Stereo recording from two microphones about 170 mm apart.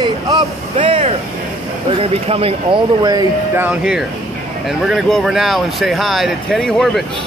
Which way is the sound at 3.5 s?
5° right (ahead or behind).